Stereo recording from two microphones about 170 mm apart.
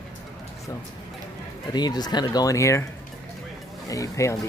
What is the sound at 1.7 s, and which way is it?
Speech, 25° left (ahead or behind).